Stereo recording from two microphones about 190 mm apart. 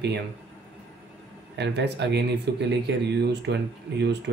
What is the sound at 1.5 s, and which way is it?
Speech, 65° right (ahead or behind).